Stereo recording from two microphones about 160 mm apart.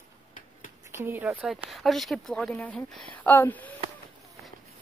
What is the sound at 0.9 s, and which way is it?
Speech, 15° right (ahead or behind).